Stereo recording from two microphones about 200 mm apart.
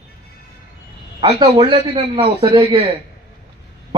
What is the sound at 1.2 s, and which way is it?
A man's voice, 25° right (ahead or behind).